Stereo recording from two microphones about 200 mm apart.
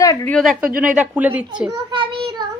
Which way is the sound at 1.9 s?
25° right (ahead or behind).